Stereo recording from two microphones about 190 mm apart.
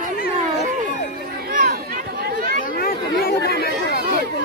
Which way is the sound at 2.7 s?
50° left (ahead or behind).